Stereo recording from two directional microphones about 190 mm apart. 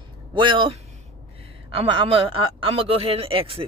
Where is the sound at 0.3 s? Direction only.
25° right (ahead or behind).